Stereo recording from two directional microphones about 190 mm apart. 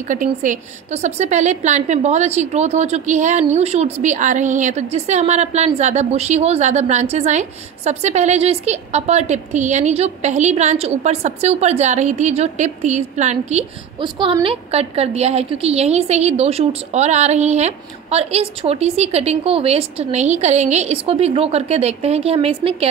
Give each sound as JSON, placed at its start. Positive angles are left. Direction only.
{"t": 0.1, "sound": "a woman's voice", "side_deg": -40}